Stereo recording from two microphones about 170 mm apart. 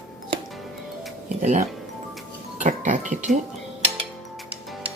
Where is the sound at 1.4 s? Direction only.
50° right (ahead or behind).